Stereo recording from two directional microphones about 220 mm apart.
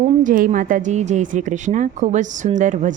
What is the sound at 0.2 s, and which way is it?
Speech, 35° right (ahead or behind).